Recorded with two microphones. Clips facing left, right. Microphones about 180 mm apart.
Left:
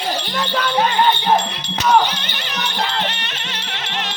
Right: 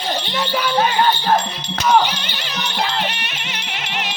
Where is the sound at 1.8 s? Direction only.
10° right (ahead or behind).